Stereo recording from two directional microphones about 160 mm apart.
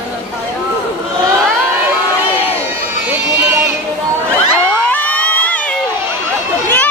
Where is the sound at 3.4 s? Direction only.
15° right (ahead or behind).